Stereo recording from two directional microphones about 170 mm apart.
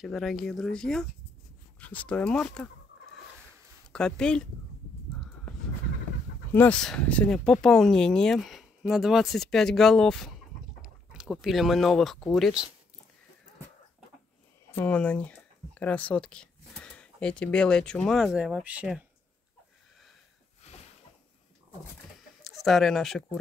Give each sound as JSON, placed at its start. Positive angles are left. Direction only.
{"t": 0.0, "sound": "speech", "side_deg": 0}
{"t": 3.9, "sound": "speech", "side_deg": 5}
{"t": 6.5, "sound": "speech", "side_deg": 10}
{"t": 14.7, "sound": "speech", "side_deg": 10}
{"t": 22.4, "sound": "speech", "side_deg": 0}